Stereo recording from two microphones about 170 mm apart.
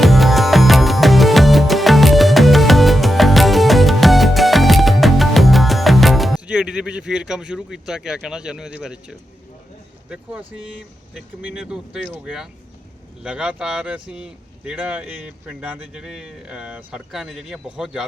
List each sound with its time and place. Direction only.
0.0 s music: centre (ahead or behind)
10.1 s speech: 5° right (ahead or behind)